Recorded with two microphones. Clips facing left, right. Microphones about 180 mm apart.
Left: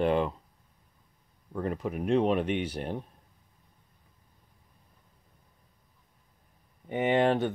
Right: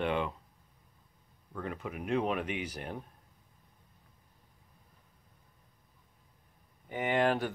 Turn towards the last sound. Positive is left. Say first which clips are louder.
# left 4 dB
turn(degrees=25)  # may be behind; listen again after turning